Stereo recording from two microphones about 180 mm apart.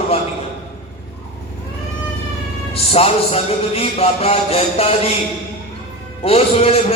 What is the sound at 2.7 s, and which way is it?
A man's voice, 35° left (ahead or behind).